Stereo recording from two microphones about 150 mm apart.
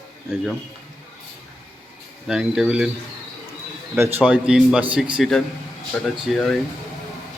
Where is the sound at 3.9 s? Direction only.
15° right (ahead or behind); by 6.6 s centre (ahead or behind).